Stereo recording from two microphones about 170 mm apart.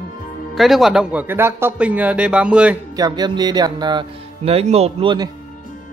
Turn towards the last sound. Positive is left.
turn(degrees=-30)  # may be behind; listen again after turning